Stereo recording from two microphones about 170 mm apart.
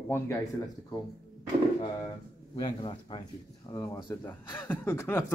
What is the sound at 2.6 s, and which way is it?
A man's voice, 25° left (ahead or behind).